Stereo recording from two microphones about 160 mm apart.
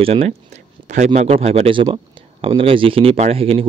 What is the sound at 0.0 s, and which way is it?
Speech, 40° right (ahead or behind).